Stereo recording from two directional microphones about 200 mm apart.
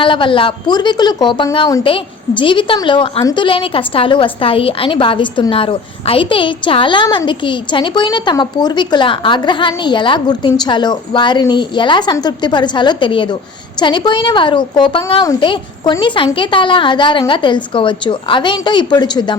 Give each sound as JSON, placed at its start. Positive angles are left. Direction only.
{"t": 0.0, "sound": "a woman's voice", "side_deg": 25}